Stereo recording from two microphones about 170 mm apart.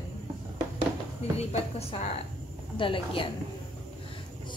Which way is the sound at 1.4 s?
35° left (ahead or behind).